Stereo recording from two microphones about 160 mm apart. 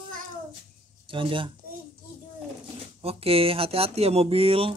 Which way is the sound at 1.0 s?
35° right (ahead or behind).